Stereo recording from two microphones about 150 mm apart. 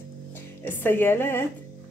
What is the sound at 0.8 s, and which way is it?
Speech, 15° left (ahead or behind).